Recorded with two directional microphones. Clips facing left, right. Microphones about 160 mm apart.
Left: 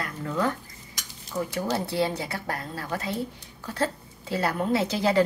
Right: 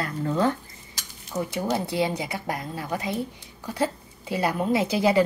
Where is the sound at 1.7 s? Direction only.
15° right (ahead or behind).